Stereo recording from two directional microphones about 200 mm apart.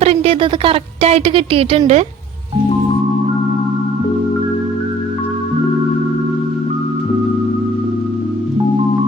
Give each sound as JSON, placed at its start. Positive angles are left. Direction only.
{"t": 0.0, "sound": "speech", "side_deg": -30}